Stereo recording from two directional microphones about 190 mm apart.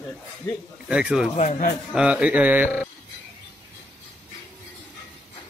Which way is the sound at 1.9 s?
5° right (ahead or behind).